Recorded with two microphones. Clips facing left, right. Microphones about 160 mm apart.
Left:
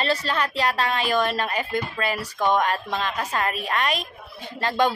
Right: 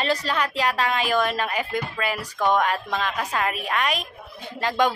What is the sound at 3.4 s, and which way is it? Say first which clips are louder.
Speech: even; 5° right (ahead or behind).